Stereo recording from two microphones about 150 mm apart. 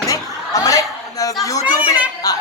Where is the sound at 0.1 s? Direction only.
20° left (ahead or behind).